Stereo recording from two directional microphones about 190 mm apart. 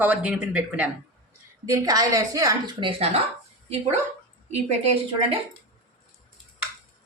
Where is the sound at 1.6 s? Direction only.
15° right (ahead or behind).